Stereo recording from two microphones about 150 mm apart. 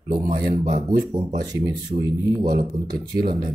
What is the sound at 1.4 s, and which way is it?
Speech, 25° right (ahead or behind).